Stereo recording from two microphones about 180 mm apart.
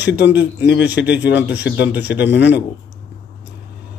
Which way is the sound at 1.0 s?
80° left.